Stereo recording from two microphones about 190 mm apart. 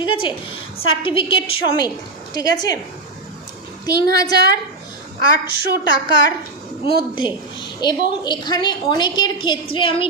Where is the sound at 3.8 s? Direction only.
55° right (ahead or behind).